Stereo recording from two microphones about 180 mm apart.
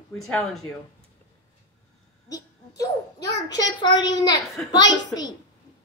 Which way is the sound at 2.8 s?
20° left (ahead or behind).